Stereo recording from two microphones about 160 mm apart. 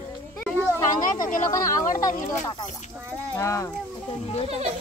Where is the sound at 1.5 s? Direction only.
20° left (ahead or behind).